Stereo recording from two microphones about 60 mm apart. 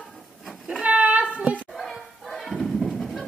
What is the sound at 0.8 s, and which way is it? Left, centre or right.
Child singing, right.